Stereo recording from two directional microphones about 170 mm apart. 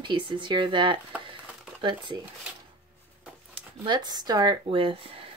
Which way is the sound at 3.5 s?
25° right (ahead or behind).